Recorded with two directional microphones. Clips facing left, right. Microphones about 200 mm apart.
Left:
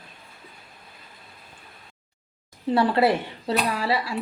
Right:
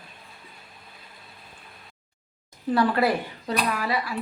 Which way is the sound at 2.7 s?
25° left (ahead or behind).